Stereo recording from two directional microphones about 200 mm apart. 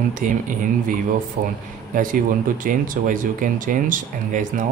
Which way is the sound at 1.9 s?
40° right (ahead or behind).